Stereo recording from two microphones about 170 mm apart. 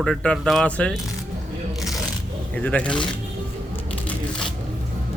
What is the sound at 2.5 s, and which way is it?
Speech, 5° left (ahead or behind).